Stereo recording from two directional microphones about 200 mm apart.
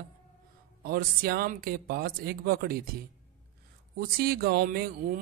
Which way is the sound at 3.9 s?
50° right (ahead or behind).